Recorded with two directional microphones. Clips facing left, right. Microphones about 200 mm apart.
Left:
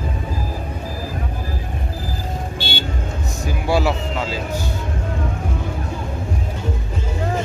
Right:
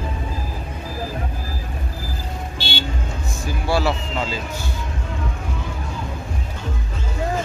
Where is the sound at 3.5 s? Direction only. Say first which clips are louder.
Left 2 dB; 15° left (ahead or behind).